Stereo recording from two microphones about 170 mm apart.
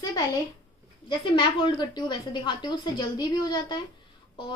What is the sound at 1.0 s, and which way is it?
A woman's voice, 30° left (ahead or behind).